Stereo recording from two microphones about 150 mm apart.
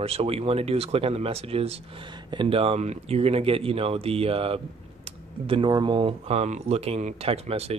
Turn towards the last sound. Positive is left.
turn(degrees=-40)  # may be behind; listen again after turning